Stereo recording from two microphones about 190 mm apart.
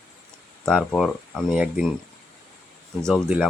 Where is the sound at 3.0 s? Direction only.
5° left (ahead or behind).